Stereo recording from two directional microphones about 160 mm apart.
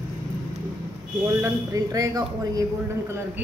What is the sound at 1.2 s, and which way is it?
Speech, 20° right (ahead or behind).